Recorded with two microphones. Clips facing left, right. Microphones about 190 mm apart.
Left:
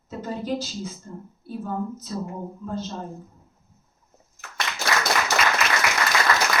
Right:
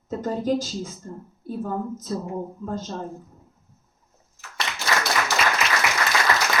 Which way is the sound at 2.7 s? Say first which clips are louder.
Left 2 dB; 45° right (ahead or behind).